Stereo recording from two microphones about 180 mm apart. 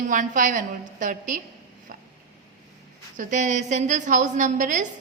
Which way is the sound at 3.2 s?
45° right (ahead or behind).